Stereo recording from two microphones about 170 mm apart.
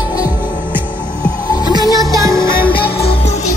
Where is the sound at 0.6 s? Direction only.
10° right (ahead or behind).